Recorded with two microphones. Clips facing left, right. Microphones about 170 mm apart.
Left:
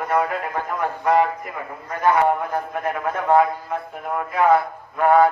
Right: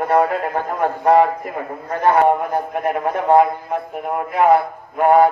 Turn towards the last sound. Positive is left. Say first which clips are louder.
# right 3 dB
turn(degrees=-30)  # may be behind; listen again after turning